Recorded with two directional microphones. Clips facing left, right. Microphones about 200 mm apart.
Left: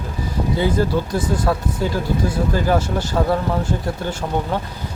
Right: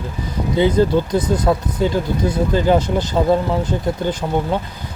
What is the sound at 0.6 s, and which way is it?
Speech, 20° right (ahead or behind).